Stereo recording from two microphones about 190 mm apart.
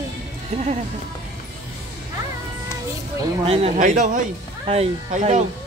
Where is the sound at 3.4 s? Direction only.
30° right (ahead or behind).